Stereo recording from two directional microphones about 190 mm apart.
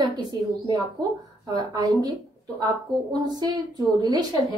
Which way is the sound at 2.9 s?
Centre (ahead or behind).